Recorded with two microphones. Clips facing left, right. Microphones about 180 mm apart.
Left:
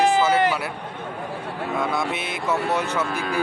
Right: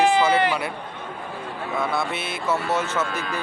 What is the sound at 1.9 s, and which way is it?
Speech, 15° left (ahead or behind).